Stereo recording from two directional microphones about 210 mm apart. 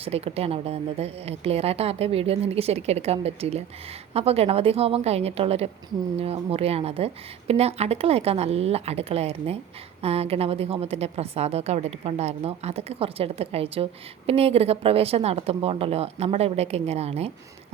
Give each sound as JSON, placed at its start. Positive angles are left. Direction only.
{"t": 0.0, "sound": "a woman's voice", "side_deg": -30}